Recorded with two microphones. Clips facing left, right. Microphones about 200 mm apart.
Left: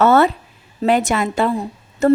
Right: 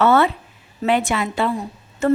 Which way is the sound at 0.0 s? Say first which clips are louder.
Left 3 dB; 40° left (ahead or behind).